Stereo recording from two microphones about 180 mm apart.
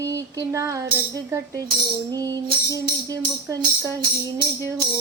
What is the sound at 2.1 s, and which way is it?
Music, 20° right (ahead or behind).